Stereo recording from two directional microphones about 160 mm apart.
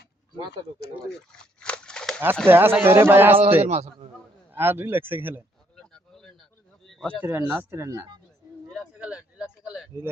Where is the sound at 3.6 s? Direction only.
45° right (ahead or behind).